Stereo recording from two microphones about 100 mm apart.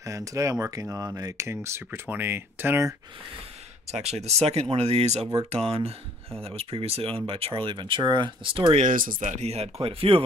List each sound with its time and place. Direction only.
0.0 s speech: 35° right (ahead or behind)
3.9 s speech: 90° right; by 8.7 s 55° right (ahead or behind)
9.4 s speech: 90° right; by 10.2 s 70° right (ahead or behind)